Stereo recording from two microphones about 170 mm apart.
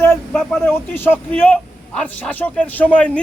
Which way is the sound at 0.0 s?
15° left (ahead or behind).